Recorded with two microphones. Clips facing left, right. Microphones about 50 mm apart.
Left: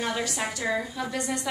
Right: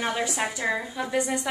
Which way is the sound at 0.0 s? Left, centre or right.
Right.